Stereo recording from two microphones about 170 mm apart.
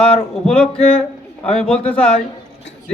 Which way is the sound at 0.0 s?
35° left (ahead or behind).